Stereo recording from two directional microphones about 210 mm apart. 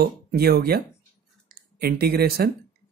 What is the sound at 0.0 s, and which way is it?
Speech, 45° right (ahead or behind).